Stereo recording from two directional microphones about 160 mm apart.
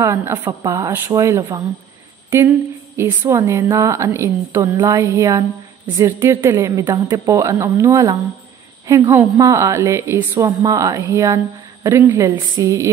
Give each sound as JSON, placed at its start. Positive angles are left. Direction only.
{"t": 0.0, "sound": "a woman's voice", "side_deg": -15}
{"t": 3.0, "sound": "a woman's voice", "side_deg": -15}